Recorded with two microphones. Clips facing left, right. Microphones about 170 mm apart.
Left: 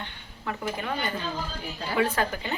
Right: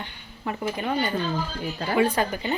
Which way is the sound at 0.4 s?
25° right (ahead or behind).